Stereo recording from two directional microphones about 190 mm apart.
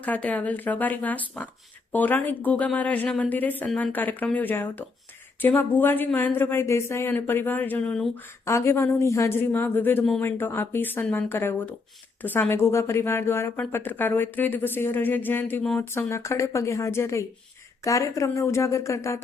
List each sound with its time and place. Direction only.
0.0 s speech: 10° left (ahead or behind)